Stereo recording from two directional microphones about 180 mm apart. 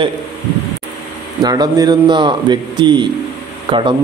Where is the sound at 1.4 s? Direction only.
20° right (ahead or behind).